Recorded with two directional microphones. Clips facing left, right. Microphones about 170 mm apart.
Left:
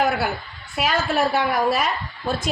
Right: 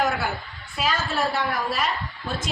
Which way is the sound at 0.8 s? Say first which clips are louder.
Left 4 dB; 70° left (ahead or behind).